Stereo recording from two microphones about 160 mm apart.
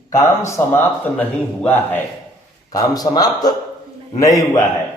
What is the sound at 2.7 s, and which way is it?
Speech, 25° left (ahead or behind).